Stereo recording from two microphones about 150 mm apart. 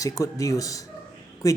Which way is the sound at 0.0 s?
20° left (ahead or behind).